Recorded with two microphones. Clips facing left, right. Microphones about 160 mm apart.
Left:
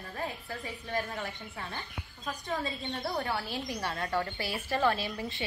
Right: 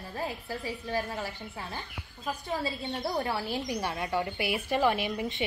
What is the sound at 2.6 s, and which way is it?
A woman's voice, 10° right (ahead or behind).